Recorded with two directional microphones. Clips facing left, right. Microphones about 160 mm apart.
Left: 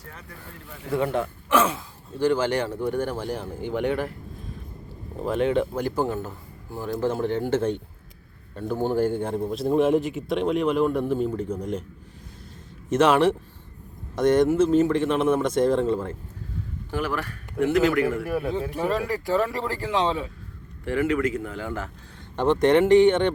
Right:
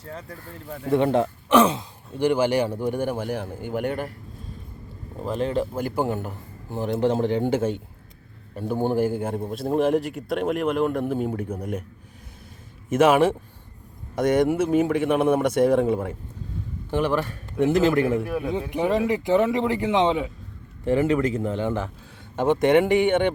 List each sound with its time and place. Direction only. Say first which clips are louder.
0.0 s speech: right 6 dB; 30° right (ahead or behind); by 3.3 s 10° right (ahead or behind)
3.3 s speech: right 1 dB; 50° right (ahead or behind)
5.4 s speech: left 2 dB; 40° right (ahead or behind)
5.9 s a man's voice: right 1 dB; 15° right (ahead or behind)
12.9 s speech: right 1 dB; 10° right (ahead or behind)
22.4 s speech: even; 10° right (ahead or behind)